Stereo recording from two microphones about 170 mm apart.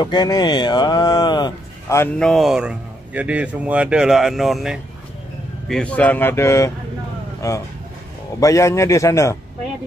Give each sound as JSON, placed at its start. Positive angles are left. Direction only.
{"t": 0.0, "sound": "speech", "side_deg": 25}
{"t": 2.1, "sound": "speech", "side_deg": 0}